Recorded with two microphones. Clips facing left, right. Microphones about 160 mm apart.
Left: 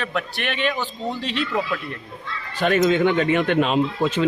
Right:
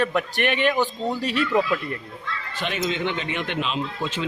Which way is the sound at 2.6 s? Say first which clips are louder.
Left 9 dB; 45° left (ahead or behind).